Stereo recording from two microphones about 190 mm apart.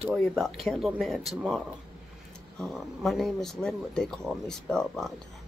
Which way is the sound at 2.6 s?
Centre (ahead or behind).